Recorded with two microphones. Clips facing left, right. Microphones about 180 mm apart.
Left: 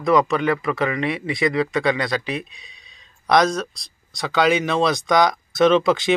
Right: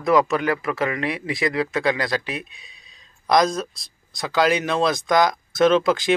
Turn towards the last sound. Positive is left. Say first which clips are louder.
# left 1 dB
turn(degrees=0)  # may be behind; listen again after turning